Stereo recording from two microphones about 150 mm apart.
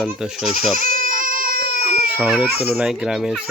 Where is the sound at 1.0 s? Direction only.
65° right (ahead or behind).